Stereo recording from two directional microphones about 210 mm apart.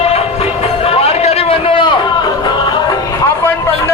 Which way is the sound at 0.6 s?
30° left (ahead or behind).